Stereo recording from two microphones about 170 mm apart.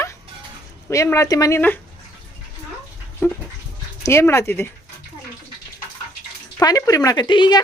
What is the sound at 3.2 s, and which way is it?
A woman's voice, 15° left (ahead or behind).